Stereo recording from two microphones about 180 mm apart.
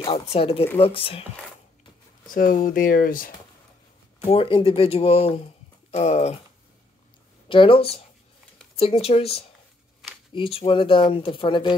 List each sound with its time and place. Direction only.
0.0 s speech: 30° left (ahead or behind)
2.3 s speech: 50° left (ahead or behind)
4.3 s speech: 30° left (ahead or behind)
7.4 s speech: 30° left (ahead or behind)